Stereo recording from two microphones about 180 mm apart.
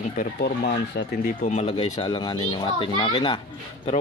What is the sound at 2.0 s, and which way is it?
Speech, 25° left (ahead or behind).